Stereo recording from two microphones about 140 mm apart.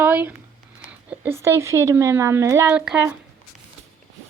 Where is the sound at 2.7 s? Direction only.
5° right (ahead or behind).